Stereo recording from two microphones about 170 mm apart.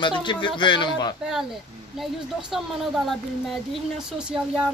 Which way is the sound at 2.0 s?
Centre (ahead or behind).